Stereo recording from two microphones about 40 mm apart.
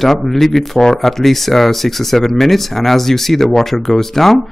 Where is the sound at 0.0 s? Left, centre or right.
Centre.